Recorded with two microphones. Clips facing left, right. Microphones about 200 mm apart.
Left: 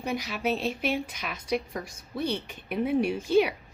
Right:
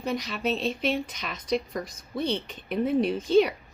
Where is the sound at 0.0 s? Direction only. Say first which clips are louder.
Right 1 dB; 10° left (ahead or behind).